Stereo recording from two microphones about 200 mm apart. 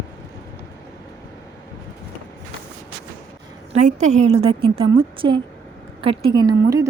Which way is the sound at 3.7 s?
35° right (ahead or behind).